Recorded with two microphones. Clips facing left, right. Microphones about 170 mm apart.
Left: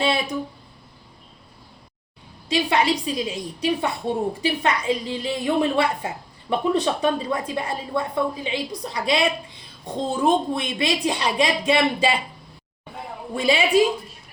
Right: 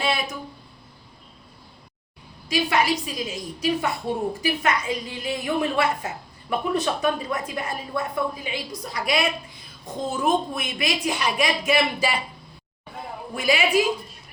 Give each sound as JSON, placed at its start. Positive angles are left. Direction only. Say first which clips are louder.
{"t": 0.0, "sound": "a sound", "louder": "left 3 dB", "side_deg": 30}
{"t": 2.5, "sound": "a woman's voice", "louder": "left 2 dB", "side_deg": 30}
{"t": 13.3, "sound": "a woman's voice", "louder": "left 2 dB", "side_deg": 30}